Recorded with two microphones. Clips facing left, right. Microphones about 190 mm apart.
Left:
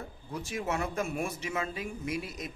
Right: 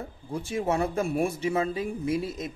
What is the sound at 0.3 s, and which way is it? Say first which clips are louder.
A man's voice: right 6 dB; 30° right (ahead or behind).